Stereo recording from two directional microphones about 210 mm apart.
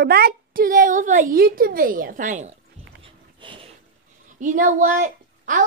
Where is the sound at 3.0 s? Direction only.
25° right (ahead or behind).